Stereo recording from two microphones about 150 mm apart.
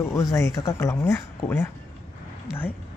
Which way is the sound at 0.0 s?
20° left (ahead or behind).